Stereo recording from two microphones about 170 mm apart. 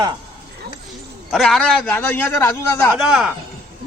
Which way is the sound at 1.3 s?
5° left (ahead or behind).